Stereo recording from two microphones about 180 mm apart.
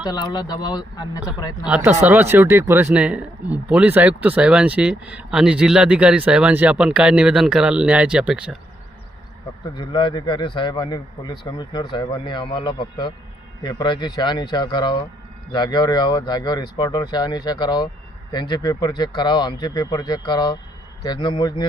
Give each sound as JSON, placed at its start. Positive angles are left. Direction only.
{"t": 0.0, "sound": "speech", "side_deg": 20}
{"t": 1.6, "sound": "speech", "side_deg": -10}
{"t": 9.7, "sound": "speech", "side_deg": 25}